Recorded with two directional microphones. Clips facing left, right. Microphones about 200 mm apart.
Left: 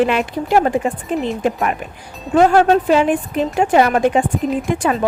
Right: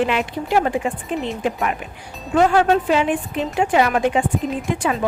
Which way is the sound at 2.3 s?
40° left (ahead or behind).